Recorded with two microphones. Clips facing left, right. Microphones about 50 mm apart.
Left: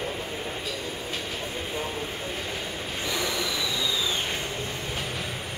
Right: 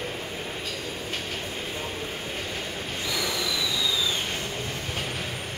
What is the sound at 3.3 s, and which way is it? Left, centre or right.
Train, centre.